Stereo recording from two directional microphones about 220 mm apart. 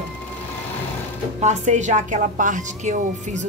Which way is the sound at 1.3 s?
30° right (ahead or behind).